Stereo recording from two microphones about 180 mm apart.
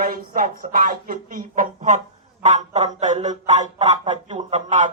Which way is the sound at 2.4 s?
40° right (ahead or behind).